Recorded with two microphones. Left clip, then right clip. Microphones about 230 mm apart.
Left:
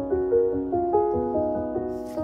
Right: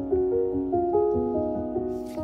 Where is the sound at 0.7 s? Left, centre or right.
Left.